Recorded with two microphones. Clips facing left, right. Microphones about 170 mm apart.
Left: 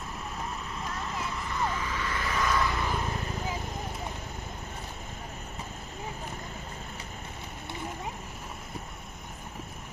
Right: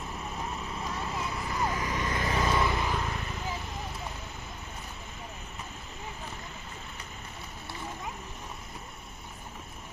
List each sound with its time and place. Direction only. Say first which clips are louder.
0.7 s clip-clop: right 1 dB; centre (ahead or behind)
1.6 s vehicle: right 1 dB; 15° right (ahead or behind)
2.0 s vehicle: right 1 dB; 35° right (ahead or behind)
3.1 s vehicle: left 2 dB; 35° left (ahead or behind)